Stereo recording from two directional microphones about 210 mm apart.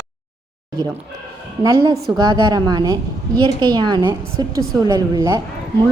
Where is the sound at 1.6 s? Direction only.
15° right (ahead or behind).